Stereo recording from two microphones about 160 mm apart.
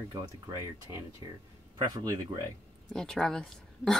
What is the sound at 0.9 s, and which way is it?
Speech, 20° right (ahead or behind).